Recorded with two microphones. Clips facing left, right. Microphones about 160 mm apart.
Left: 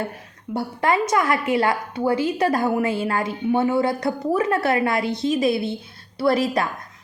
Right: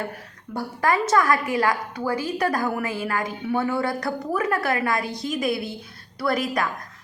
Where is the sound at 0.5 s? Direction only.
25° left (ahead or behind).